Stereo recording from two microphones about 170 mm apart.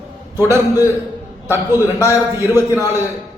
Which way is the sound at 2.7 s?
15° right (ahead or behind).